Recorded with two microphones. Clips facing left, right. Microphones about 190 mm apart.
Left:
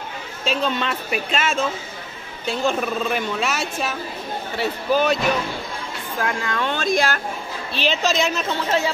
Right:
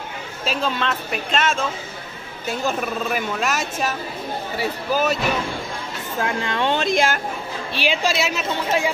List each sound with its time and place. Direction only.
0.5 s speech: 5° left (ahead or behind)
2.6 s a woman's voice: 5° right (ahead or behind)
6.1 s speech: 25° right (ahead or behind)
7.7 s a woman's voice: 10° right (ahead or behind)